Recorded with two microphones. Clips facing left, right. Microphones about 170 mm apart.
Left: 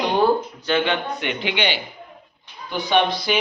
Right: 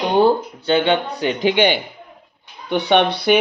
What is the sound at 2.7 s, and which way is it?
Speech, 65° right (ahead or behind).